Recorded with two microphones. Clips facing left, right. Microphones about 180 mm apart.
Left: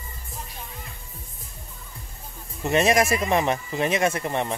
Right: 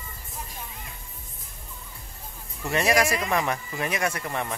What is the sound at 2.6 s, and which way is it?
Speech, 20° left (ahead or behind).